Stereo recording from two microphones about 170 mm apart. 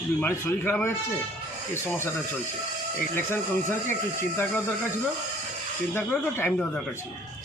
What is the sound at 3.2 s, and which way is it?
Speech, 15° left (ahead or behind).